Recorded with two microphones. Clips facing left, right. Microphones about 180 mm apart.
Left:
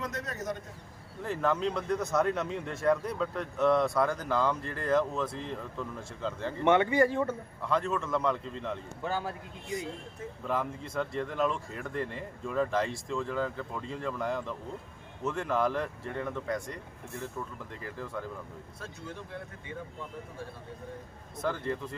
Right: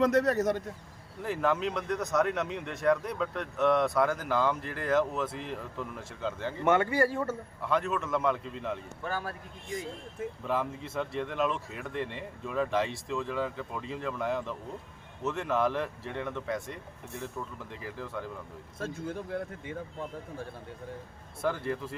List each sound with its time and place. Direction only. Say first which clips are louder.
0.0 s speech: right 12 dB; 70° right (ahead or behind)
1.2 s speech: even; 5° right (ahead or behind)
9.0 s a man's voice: left 2 dB; 20° left (ahead or behind)
10.4 s speech: even; centre (ahead or behind)
17.8 s speech: even; centre (ahead or behind)
21.4 s speech: right 1 dB; 10° right (ahead or behind)